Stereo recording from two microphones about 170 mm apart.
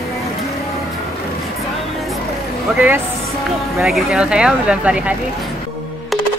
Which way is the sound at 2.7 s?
10° right (ahead or behind).